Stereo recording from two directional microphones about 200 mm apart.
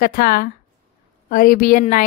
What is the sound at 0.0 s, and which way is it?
A woman's voice, 45° left (ahead or behind).